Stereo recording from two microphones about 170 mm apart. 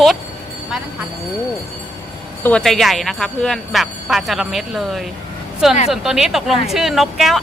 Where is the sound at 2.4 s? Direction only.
5° left (ahead or behind).